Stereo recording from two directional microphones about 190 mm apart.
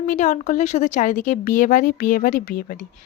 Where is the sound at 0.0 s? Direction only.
40° left (ahead or behind).